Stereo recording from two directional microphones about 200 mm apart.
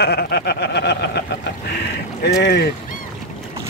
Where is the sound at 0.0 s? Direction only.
55° left (ahead or behind).